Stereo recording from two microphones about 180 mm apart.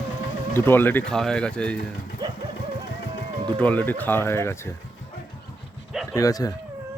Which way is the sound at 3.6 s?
10° left (ahead or behind).